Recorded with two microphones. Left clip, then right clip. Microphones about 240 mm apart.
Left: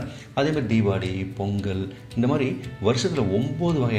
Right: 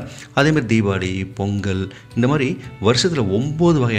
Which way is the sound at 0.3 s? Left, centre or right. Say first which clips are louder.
Right 7 dB; right.